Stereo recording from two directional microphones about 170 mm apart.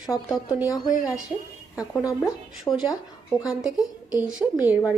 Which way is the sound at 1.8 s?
20° left (ahead or behind).